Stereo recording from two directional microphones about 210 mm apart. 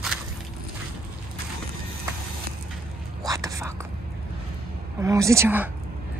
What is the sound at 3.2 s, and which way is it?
Whispering, 15° right (ahead or behind).